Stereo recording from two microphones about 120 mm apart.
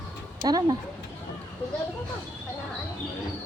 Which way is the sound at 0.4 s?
35° right (ahead or behind).